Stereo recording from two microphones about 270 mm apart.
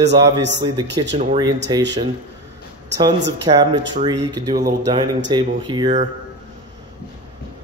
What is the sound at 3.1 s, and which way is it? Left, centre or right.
Speech, right.